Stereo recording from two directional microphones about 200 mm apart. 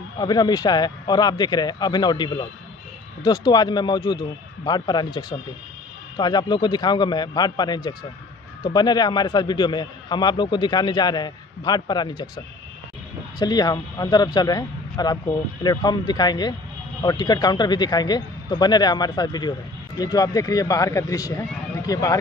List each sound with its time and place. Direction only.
0.2 s a man's voice: 20° left (ahead or behind)
13.4 s a man's voice: 20° left (ahead or behind)